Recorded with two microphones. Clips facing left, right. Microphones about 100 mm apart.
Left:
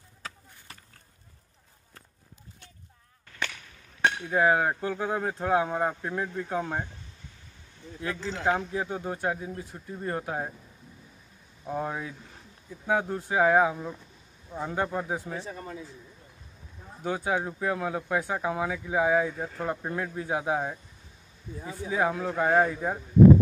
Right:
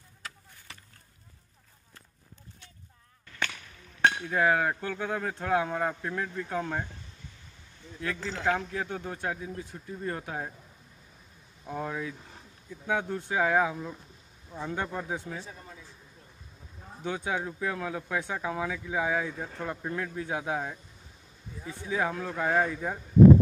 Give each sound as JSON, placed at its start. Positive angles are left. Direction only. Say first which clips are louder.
{"t": 4.3, "sound": "speech", "louder": "left 2 dB", "side_deg": 20}
{"t": 8.0, "sound": "speech", "louder": "left 1 dB", "side_deg": 20}
{"t": 11.6, "sound": "speech", "louder": "left 2 dB", "side_deg": 20}
{"t": 15.4, "sound": "speech", "louder": "left 8 dB", "side_deg": 75}
{"t": 17.0, "sound": "speech", "louder": "left 3 dB", "side_deg": 35}